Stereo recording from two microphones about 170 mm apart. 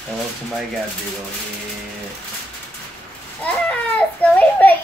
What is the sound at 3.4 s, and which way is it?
A child's voice, 10° left (ahead or behind).